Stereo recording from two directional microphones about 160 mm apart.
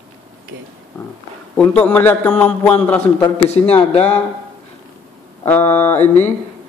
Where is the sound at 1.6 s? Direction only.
10° left (ahead or behind).